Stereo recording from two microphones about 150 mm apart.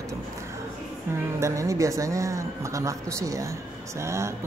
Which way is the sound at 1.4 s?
20° right (ahead or behind).